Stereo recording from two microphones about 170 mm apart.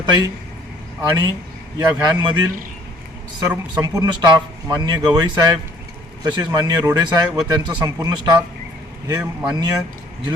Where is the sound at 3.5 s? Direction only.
15° right (ahead or behind).